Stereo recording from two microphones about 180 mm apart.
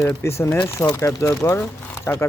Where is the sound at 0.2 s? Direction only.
15° left (ahead or behind).